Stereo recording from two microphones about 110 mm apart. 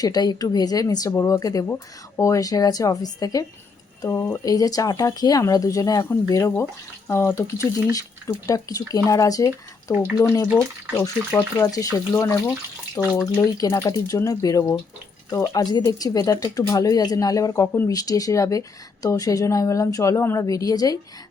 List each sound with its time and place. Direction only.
0.0 s speech: 35° left (ahead or behind)
11.6 s speech: 35° left (ahead or behind)